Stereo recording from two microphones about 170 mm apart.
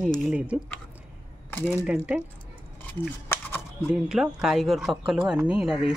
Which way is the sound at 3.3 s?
15° left (ahead or behind).